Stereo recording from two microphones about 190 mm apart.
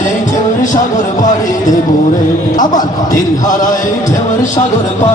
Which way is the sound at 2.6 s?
45° left (ahead or behind).